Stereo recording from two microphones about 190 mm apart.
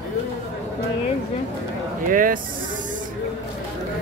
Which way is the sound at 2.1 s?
45° right (ahead or behind).